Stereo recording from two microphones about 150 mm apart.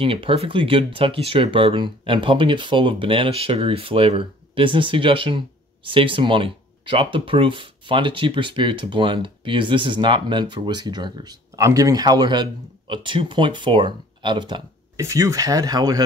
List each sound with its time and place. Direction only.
0.0 s speech: 35° right (ahead or behind)
15.0 s speech: 20° right (ahead or behind)